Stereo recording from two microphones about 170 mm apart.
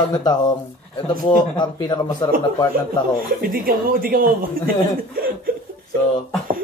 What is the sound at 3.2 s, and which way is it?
A man's voice, 55° right (ahead or behind).